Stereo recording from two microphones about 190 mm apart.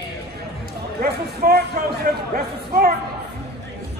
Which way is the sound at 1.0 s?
55° right (ahead or behind).